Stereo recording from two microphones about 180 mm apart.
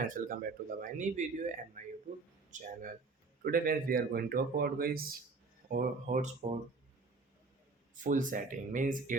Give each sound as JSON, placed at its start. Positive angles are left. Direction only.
{"t": 0.1, "sound": "speech", "side_deg": -50}
{"t": 3.4, "sound": "speech", "side_deg": -55}
{"t": 8.0, "sound": "speech", "side_deg": -45}